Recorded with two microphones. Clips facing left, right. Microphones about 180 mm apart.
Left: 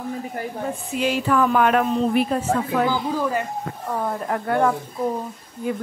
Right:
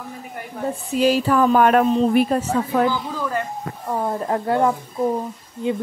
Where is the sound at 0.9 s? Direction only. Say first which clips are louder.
Right 4 dB; 35° right (ahead or behind).